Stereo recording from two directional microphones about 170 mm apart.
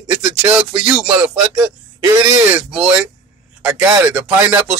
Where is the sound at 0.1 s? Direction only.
5° right (ahead or behind).